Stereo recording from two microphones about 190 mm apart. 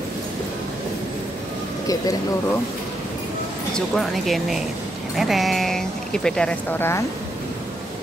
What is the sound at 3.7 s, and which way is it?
Speech, centre (ahead or behind).